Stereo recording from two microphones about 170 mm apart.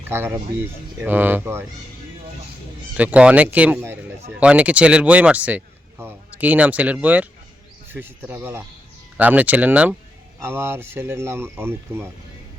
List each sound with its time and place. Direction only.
0.1 s speech: 15° right (ahead or behind)
2.9 s speech: 10° right (ahead or behind)